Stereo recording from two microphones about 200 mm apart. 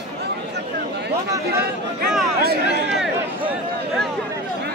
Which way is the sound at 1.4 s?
50° right (ahead or behind).